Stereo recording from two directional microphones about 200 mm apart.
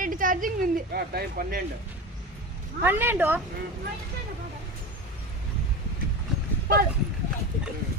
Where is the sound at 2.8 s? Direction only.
10° right (ahead or behind).